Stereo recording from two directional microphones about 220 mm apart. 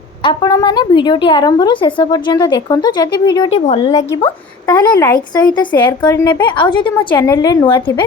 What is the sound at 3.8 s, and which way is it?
Speech, 15° left (ahead or behind).